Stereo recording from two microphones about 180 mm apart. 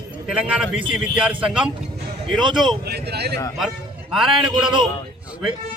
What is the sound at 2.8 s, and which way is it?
Speech, 65° right (ahead or behind).